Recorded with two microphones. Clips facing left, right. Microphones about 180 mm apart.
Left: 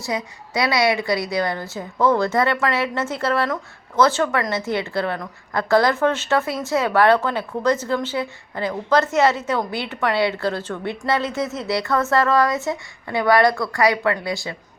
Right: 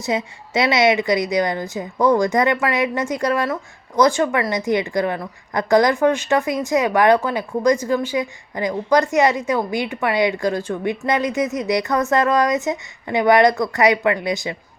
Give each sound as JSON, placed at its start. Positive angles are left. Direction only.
{"t": 0.0, "sound": "a woman's voice", "side_deg": -25}